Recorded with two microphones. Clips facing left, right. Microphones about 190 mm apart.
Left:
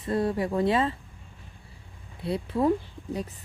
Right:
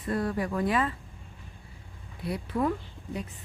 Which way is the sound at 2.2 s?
25° left (ahead or behind).